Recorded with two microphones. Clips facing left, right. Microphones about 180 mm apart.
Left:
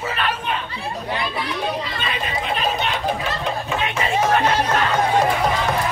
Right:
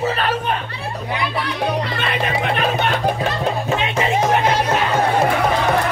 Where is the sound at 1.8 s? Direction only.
65° right (ahead or behind).